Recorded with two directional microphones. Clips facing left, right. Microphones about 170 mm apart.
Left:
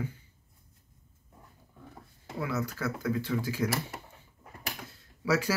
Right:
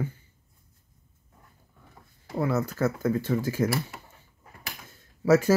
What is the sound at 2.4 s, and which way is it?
Speech, 50° right (ahead or behind).